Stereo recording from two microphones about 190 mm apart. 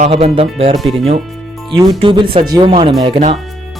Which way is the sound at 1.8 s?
25° right (ahead or behind).